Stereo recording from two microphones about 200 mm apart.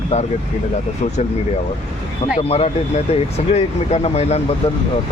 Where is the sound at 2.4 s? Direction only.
30° left (ahead or behind).